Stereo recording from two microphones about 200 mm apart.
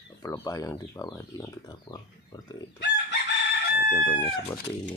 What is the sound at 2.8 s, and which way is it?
Chicken, 55° left (ahead or behind).